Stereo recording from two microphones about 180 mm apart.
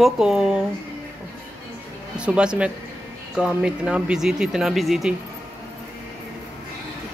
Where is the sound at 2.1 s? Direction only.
5° right (ahead or behind).